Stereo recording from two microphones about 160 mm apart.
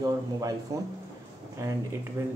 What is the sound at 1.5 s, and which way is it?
Speech, 20° right (ahead or behind).